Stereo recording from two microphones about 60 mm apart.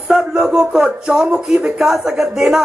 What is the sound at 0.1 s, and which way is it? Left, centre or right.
Speech, centre.